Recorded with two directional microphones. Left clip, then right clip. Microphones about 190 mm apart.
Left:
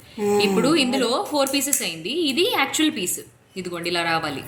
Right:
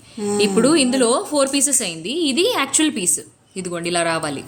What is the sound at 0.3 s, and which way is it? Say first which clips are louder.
A woman's voice: right 4 dB; 55° right (ahead or behind).